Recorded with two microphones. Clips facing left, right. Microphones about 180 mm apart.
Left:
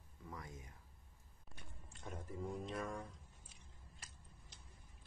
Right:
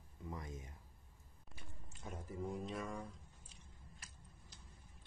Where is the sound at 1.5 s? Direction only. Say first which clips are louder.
Right 1 dB; 5° right (ahead or behind).